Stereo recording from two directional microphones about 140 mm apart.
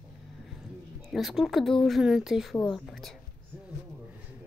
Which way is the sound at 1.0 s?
Centre (ahead or behind).